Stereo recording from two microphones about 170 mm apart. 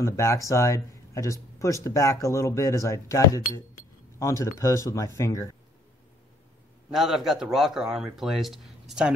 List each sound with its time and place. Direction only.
0.0 s speech: 15° left (ahead or behind)
6.9 s speech: centre (ahead or behind)